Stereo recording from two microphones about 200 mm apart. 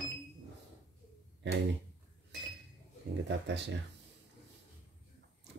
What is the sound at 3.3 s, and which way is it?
Speech, 60° right (ahead or behind).